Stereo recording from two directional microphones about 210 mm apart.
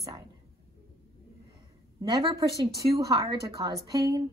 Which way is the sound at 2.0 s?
20° right (ahead or behind).